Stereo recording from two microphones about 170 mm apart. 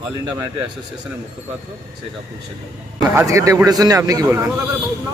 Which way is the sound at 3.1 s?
15° right (ahead or behind).